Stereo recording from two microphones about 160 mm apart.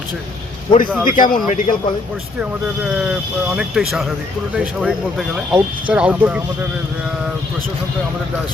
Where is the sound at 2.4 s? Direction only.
5° right (ahead or behind).